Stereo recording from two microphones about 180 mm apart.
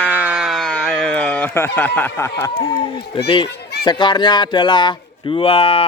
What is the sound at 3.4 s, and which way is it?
Children playing, 65° left (ahead or behind).